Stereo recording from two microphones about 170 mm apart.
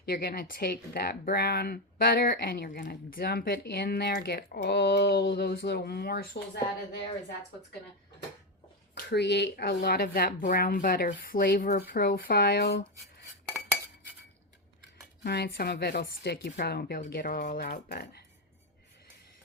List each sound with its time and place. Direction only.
0.0 s speech: 60° left (ahead or behind)
9.0 s speech: 80° left
15.2 s speech: 70° left (ahead or behind)